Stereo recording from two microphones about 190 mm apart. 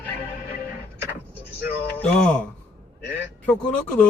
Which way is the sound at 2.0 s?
5° left (ahead or behind).